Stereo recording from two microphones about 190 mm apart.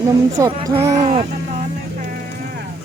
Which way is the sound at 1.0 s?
30° right (ahead or behind).